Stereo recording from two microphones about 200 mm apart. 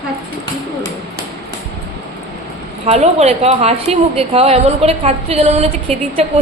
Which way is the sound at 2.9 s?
35° right (ahead or behind).